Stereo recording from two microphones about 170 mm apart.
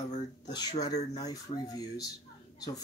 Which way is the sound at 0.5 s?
25° left (ahead or behind).